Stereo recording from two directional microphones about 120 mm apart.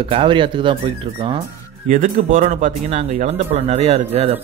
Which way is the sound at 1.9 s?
90° right.